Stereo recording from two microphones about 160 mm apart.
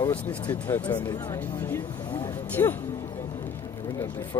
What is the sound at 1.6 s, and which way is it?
Speech, 10° left (ahead or behind).